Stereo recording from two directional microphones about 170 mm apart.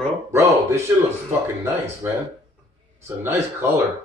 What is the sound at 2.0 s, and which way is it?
Speech, 15° right (ahead or behind).